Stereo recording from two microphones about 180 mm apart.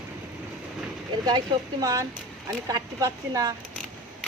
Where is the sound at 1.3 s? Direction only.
20° right (ahead or behind).